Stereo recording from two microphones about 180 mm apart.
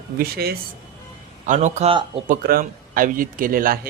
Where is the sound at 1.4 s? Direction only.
45° right (ahead or behind).